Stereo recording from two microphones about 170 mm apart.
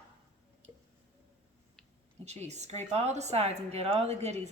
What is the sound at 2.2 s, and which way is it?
A woman's voice, 40° right (ahead or behind).